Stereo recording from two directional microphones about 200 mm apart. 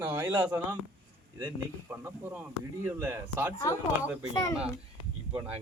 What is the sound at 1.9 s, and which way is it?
Speech, 10° right (ahead or behind).